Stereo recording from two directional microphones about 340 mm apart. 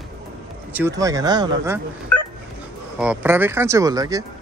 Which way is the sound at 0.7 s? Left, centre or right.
Centre.